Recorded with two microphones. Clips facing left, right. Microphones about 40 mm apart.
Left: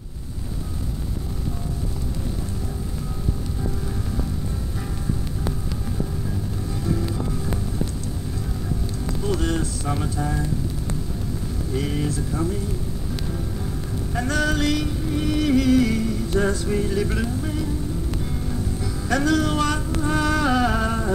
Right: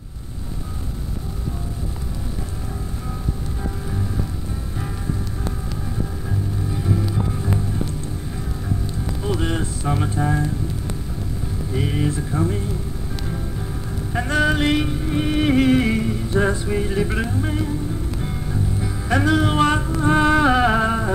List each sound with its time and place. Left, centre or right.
6.7 s music: right
9.2 s music: right
11.7 s music: right
14.1 s music: right